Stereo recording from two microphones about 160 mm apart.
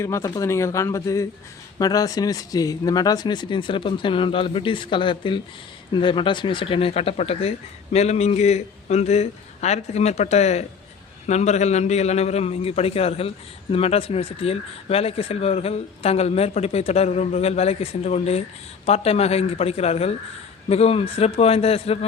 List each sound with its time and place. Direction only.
0.0 s a man's voice: 20° left (ahead or behind); by 21.9 s 40° left (ahead or behind)